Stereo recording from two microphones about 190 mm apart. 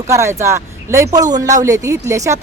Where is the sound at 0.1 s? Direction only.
15° right (ahead or behind).